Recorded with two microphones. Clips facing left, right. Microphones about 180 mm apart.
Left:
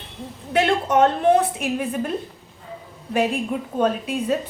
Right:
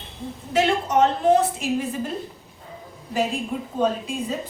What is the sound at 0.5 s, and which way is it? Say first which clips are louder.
A woman's voice: left 2 dB; 55° left (ahead or behind).